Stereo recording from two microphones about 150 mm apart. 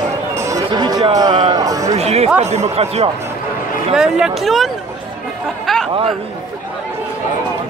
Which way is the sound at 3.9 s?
5° right (ahead or behind).